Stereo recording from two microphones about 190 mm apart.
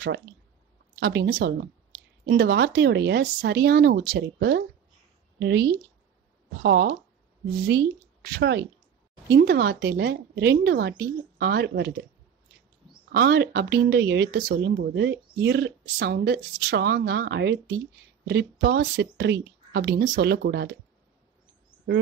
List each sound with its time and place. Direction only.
0.9 s speech: 60° right (ahead or behind)
8.3 s speech: 65° right (ahead or behind)
9.4 s speech: 55° right (ahead or behind)
13.1 s speech: 55° right (ahead or behind)